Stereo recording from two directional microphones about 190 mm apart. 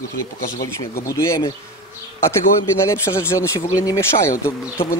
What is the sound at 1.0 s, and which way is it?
Speech, 15° left (ahead or behind).